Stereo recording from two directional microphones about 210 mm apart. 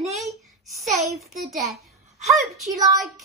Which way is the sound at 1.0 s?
Centre (ahead or behind).